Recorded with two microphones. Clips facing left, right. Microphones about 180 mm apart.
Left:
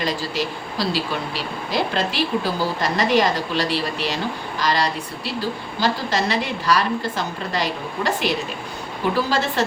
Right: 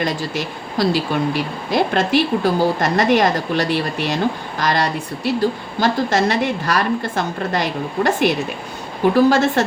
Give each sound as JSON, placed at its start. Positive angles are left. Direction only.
{"t": 0.0, "sound": "a woman's voice", "side_deg": -50}